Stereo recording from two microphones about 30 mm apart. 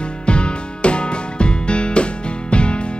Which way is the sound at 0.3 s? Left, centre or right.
Left.